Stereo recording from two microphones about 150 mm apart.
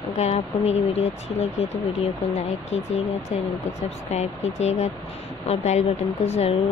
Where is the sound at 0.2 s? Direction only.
45° left (ahead or behind).